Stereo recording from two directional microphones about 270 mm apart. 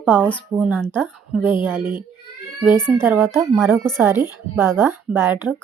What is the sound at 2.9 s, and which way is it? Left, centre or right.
A woman's voice, centre.